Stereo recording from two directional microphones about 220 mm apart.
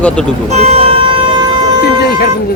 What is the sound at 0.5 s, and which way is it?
Vehicle, 25° right (ahead or behind).